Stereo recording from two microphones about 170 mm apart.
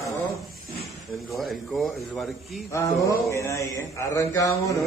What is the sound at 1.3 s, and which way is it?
A man's voice, centre (ahead or behind).